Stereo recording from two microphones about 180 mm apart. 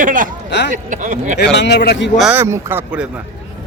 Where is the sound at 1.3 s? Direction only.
70° left (ahead or behind).